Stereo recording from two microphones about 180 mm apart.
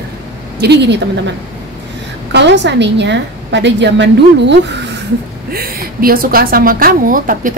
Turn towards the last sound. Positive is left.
turn(degrees=-50)  # may be behind; listen again after turning